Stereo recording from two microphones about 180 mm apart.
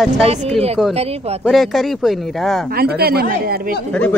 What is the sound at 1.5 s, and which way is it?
Speech, centre (ahead or behind).